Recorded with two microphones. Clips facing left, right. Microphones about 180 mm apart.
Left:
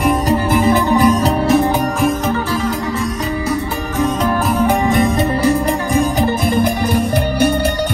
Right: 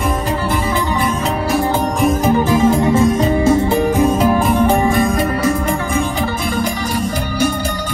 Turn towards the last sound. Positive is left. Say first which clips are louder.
# left 3 dB
turn(degrees=40)  # may be behind; listen again after turning